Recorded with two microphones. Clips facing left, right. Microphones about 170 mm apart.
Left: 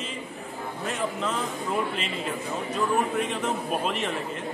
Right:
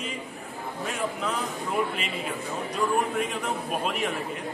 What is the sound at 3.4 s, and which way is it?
Speech, 5° right (ahead or behind).